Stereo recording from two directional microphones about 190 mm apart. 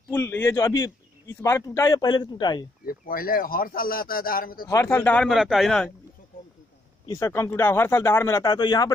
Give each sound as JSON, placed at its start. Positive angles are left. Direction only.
{"t": 0.1, "sound": "speech", "side_deg": 15}
{"t": 2.8, "sound": "speech", "side_deg": 50}
{"t": 4.6, "sound": "speech", "side_deg": 15}
{"t": 6.3, "sound": "a sound", "side_deg": 50}
{"t": 7.1, "sound": "speech", "side_deg": 15}